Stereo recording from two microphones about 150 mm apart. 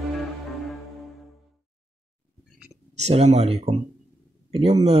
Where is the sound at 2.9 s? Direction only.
45° right (ahead or behind).